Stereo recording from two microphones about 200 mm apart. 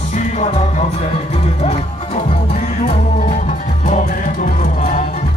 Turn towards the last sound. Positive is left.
turn(degrees=40)  # may be behind; listen again after turning